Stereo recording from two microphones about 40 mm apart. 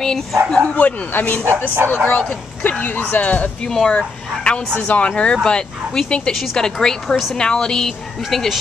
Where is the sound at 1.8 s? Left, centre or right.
Right.